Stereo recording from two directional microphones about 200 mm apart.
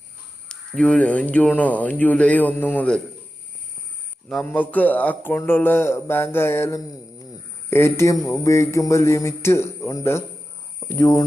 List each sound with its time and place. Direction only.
0.4 s speech: 5° left (ahead or behind)
4.4 s speech: 10° left (ahead or behind)